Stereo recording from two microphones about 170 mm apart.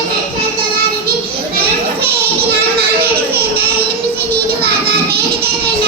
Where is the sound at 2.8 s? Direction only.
65° right (ahead or behind).